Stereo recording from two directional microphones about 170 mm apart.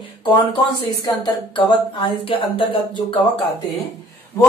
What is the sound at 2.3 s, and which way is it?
Speech, 30° left (ahead or behind).